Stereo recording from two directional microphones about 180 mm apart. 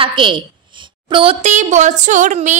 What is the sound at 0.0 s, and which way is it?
A woman's voice, 25° right (ahead or behind).